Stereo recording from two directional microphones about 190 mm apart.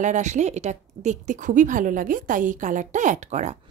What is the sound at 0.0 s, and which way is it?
Speech, 40° right (ahead or behind).